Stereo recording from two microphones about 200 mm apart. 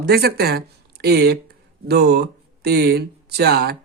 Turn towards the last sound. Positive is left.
turn(degrees=-50)  # may be behind; listen again after turning